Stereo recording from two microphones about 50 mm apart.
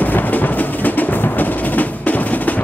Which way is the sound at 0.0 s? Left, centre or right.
Left.